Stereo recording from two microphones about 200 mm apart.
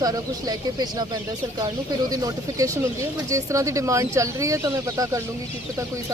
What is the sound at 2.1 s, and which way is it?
Bird, 20° right (ahead or behind).